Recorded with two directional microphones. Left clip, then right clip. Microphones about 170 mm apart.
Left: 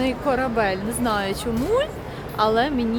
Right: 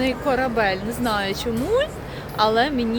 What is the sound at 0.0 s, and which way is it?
Speech, 10° left (ahead or behind).